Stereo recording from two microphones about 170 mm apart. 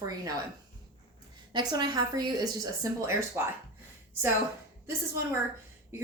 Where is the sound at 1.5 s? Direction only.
25° right (ahead or behind).